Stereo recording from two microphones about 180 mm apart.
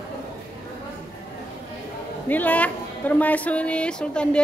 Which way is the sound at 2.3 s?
10° left (ahead or behind).